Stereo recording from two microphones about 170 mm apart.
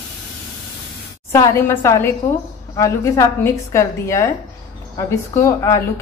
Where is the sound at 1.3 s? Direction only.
15° left (ahead or behind).